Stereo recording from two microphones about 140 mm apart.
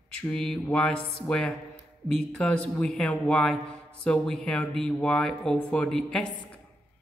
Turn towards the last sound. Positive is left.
turn(degrees=5)  # may be behind; listen again after turning